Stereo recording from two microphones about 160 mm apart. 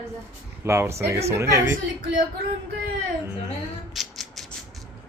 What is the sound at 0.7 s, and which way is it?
Speech, 15° right (ahead or behind).